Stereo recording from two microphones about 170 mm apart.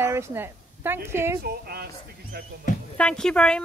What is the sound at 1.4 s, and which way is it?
Speech, 65° right (ahead or behind).